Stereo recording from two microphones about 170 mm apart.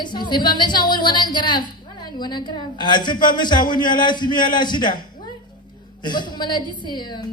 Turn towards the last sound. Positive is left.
turn(degrees=25)  # may be behind; listen again after turning